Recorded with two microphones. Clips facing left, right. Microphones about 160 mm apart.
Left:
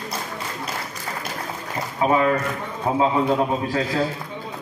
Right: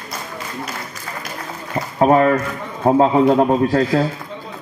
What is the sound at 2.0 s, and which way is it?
A man's voice, 50° right (ahead or behind).